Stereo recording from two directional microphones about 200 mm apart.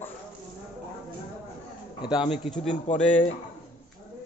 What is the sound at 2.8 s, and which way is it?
Speech, 35° left (ahead or behind).